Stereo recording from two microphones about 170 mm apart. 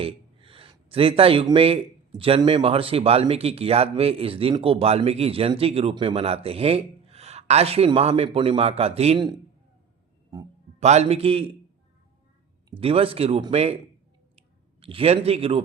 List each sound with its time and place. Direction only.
0.0 s a sound: 30° right (ahead or behind)
1.5 s speech: 35° right (ahead or behind)
10.8 s speech: 40° right (ahead or behind)
12.8 s speech: 35° right (ahead or behind)
14.3 s clicking: 35° right (ahead or behind)